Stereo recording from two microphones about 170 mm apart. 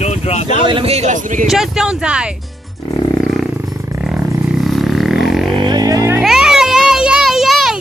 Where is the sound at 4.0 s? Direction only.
5° right (ahead or behind).